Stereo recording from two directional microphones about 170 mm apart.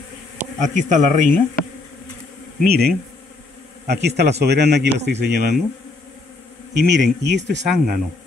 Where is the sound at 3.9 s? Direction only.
80° right.